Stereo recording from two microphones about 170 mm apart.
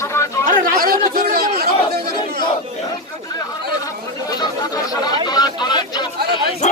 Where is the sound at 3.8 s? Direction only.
25° left (ahead or behind).